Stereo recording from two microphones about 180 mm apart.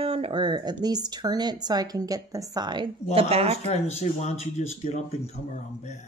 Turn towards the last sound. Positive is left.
turn(degrees=35)  # may be behind; listen again after turning